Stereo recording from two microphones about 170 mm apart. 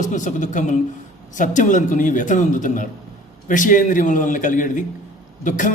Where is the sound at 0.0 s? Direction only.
45° left (ahead or behind).